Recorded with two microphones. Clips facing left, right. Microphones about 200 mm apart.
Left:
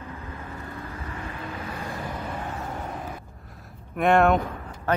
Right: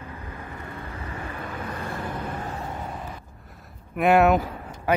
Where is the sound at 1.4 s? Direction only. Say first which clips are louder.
Right 1 dB; 55° right (ahead or behind).